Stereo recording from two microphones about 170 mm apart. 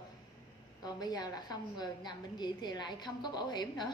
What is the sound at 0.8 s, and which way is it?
A woman's voice, 25° left (ahead or behind).